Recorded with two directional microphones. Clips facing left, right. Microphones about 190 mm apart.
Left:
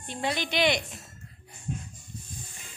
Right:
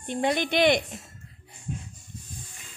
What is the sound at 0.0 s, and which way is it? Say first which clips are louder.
Speech: right 5 dB; 55° right (ahead or behind).